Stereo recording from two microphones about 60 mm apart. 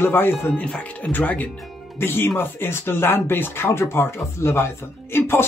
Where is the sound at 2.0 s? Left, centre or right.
Left.